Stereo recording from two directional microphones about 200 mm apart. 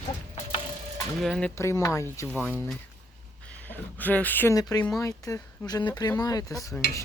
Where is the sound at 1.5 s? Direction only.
15° left (ahead or behind).